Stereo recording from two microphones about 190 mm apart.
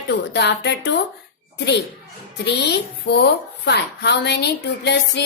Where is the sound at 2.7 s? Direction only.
60° left (ahead or behind).